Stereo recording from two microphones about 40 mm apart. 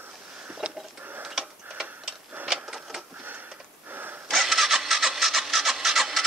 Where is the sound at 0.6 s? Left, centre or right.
Right.